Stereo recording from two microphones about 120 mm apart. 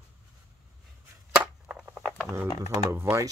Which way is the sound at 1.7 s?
10° right (ahead or behind).